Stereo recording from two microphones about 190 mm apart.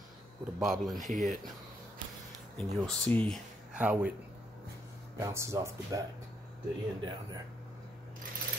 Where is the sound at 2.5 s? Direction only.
5° left (ahead or behind).